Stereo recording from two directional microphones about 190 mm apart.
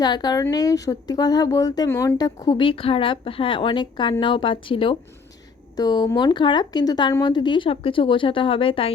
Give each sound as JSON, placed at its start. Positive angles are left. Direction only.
{"t": 0.0, "sound": "speech", "side_deg": 20}